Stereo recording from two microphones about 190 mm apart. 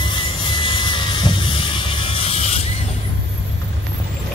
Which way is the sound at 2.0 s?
30° left (ahead or behind).